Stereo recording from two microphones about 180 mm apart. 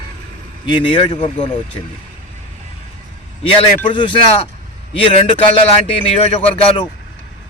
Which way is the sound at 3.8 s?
25° left (ahead or behind).